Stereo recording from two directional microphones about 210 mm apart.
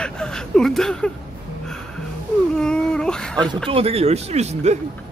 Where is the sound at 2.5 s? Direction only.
5° left (ahead or behind).